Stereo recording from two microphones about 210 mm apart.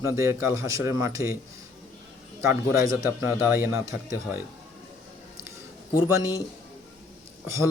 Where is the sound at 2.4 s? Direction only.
10° right (ahead or behind).